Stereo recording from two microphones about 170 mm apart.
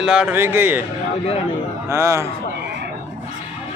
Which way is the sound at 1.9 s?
15° right (ahead or behind).